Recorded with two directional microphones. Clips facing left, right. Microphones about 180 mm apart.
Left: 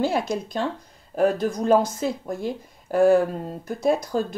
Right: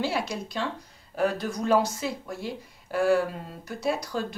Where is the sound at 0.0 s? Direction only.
50° left (ahead or behind).